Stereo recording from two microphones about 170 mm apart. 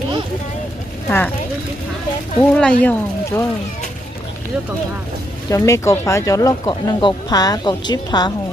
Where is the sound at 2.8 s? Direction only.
15° left (ahead or behind).